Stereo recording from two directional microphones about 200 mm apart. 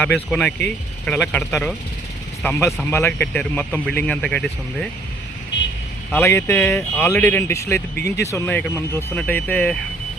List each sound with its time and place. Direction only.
0.0 s speech: 5° left (ahead or behind)
6.1 s speech: 10° left (ahead or behind)
7.9 s speech: 55° left (ahead or behind)
8.2 s speech: 15° left (ahead or behind)